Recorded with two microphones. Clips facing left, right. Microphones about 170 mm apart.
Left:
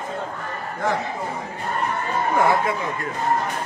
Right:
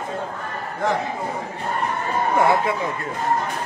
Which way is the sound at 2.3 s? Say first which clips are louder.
Right 1 dB; 25° right (ahead or behind).